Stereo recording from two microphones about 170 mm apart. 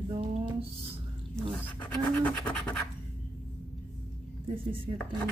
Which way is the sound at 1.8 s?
10° left (ahead or behind).